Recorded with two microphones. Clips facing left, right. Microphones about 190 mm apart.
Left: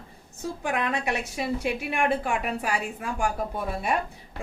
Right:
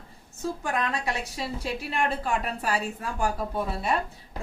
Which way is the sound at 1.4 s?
15° left (ahead or behind).